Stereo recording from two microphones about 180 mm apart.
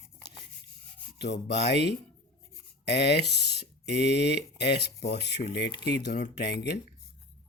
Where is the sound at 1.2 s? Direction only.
70° left (ahead or behind).